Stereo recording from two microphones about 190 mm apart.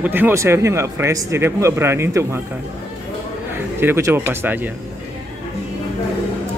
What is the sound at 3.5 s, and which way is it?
Speech, 10° right (ahead or behind).